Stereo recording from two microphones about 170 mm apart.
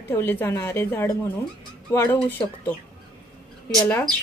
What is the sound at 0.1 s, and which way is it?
Speech, 10° left (ahead or behind).